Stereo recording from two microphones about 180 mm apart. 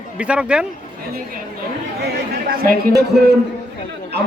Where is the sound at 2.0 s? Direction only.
55° right (ahead or behind).